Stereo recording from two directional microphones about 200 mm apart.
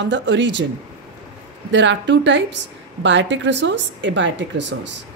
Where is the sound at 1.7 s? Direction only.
65° right (ahead or behind).